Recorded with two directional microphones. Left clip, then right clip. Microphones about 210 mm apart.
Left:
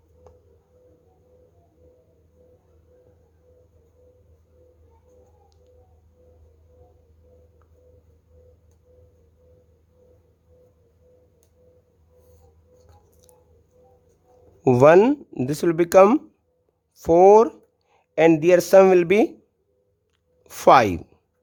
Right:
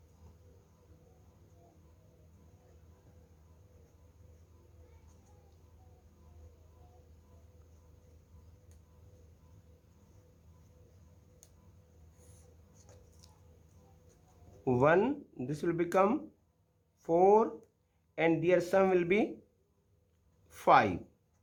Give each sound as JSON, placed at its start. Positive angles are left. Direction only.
{"t": 14.6, "sound": "speech", "side_deg": 50}
{"t": 20.5, "sound": "speech", "side_deg": 50}